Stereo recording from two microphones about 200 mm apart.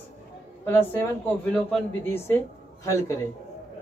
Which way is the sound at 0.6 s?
10° left (ahead or behind).